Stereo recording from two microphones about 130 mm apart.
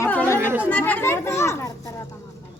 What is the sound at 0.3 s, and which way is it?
Chatter, 15° right (ahead or behind).